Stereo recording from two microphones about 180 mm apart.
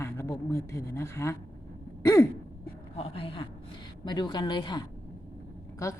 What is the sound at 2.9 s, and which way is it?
Speech, 30° left (ahead or behind).